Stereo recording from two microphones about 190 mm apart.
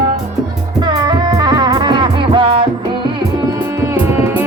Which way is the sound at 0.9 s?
20° right (ahead or behind).